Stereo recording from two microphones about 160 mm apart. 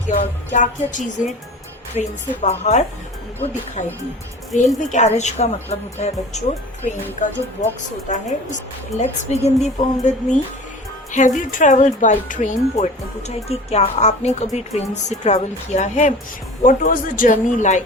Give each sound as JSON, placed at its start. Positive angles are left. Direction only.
{"t": 0.1, "sound": "speech", "side_deg": 50}